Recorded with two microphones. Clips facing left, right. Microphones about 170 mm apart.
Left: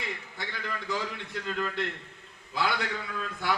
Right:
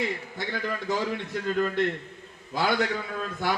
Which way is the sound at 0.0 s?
45° right (ahead or behind).